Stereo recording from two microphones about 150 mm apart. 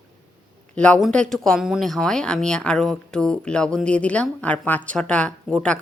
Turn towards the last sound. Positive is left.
turn(degrees=5)  # may be behind; listen again after turning